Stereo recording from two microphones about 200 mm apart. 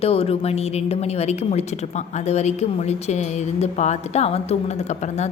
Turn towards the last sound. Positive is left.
turn(degrees=35)  # may be behind; listen again after turning